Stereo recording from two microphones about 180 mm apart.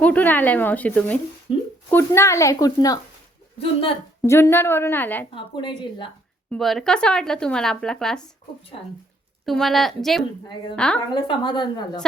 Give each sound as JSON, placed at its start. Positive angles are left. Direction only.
{"t": 0.0, "sound": "speech", "side_deg": 10}
{"t": 4.2, "sound": "speech", "side_deg": 15}
{"t": 5.3, "sound": "a woman's voice", "side_deg": 25}
{"t": 6.5, "sound": "speech", "side_deg": 0}
{"t": 9.5, "sound": "speech", "side_deg": 0}
{"t": 11.1, "sound": "a woman's voice", "side_deg": 25}